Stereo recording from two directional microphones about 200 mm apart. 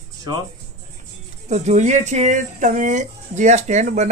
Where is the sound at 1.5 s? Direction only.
35° right (ahead or behind).